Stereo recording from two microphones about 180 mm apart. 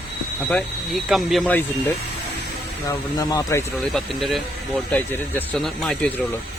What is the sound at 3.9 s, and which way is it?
Speech, centre (ahead or behind).